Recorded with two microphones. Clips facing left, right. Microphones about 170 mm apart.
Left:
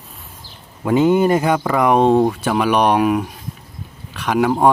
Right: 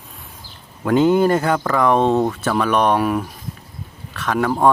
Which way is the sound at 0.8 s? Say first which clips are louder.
Even; 5° left (ahead or behind).